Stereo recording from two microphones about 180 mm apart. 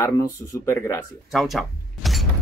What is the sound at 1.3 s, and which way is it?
Door, centre (ahead or behind).